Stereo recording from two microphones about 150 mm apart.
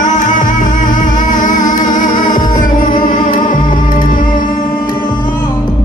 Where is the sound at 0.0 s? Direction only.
55° left (ahead or behind).